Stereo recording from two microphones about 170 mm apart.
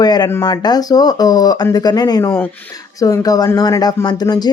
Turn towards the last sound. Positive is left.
turn(degrees=25)  # may be behind; listen again after turning